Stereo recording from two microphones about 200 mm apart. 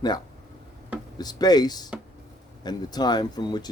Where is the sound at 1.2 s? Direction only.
20° left (ahead or behind).